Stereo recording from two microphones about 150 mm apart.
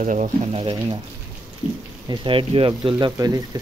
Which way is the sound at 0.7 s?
30° right (ahead or behind).